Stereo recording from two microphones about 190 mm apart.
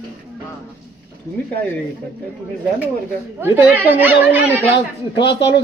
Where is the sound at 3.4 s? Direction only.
10° right (ahead or behind).